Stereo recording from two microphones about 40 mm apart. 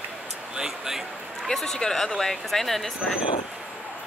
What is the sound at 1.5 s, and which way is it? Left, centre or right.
Speech, centre.